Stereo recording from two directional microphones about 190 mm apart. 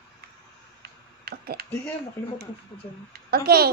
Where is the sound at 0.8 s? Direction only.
55° right (ahead or behind).